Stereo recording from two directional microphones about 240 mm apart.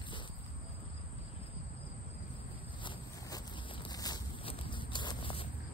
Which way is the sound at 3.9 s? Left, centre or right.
Centre.